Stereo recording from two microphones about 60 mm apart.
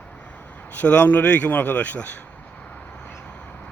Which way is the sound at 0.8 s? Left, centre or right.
Left.